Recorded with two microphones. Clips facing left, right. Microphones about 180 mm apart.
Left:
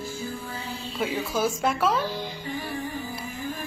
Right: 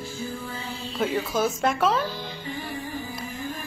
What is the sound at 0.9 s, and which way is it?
A woman's voice, 10° left (ahead or behind).